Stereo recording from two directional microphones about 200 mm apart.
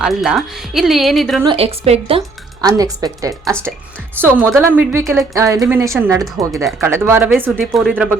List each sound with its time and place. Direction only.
0.0 s speech: centre (ahead or behind)
1.5 s a woman's voice: 30° right (ahead or behind); by 8.2 s 5° right (ahead or behind)